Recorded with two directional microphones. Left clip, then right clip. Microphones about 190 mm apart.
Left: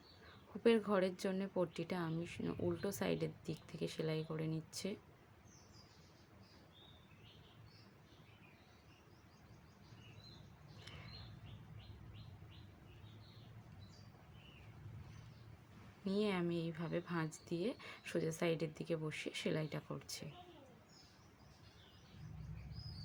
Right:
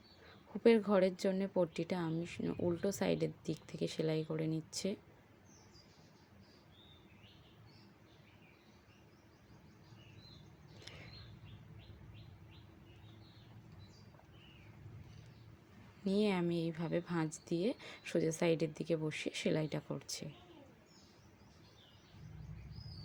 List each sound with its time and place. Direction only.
0.6 s a woman's voice: 20° right (ahead or behind)
16.0 s a woman's voice: 20° right (ahead or behind)